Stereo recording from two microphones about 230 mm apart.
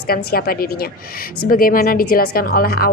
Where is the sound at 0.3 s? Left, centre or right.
Left.